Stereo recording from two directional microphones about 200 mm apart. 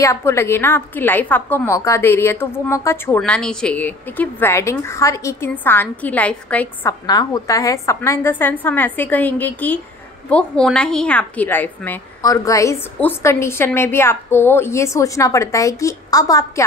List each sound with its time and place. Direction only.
0.0 s a woman's voice: 15° left (ahead or behind)